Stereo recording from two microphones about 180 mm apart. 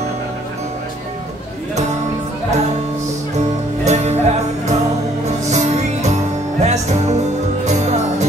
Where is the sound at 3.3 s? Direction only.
40° right (ahead or behind).